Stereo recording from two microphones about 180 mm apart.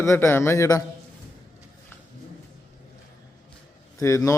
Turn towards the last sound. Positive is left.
turn(degrees=15)  # may be behind; listen again after turning